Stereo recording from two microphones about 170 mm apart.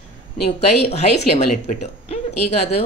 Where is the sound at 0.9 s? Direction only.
40° left (ahead or behind).